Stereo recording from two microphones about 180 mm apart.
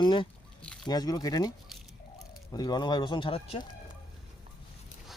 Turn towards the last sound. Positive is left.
turn(degrees=30)  # may be behind; listen again after turning